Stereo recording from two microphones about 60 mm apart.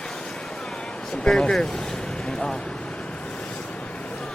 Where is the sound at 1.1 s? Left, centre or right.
Centre.